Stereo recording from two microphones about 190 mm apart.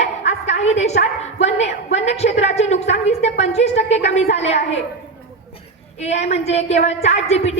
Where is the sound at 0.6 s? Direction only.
35° left (ahead or behind).